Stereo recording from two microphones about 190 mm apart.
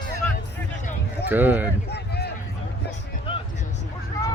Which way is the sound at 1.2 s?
10° right (ahead or behind).